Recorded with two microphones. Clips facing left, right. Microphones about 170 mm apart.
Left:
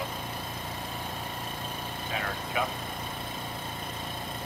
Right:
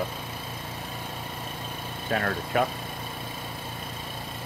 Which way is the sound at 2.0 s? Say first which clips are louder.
Right 8 dB; 50° right (ahead or behind).